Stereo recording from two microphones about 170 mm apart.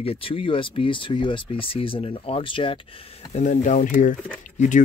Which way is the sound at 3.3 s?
45° left (ahead or behind).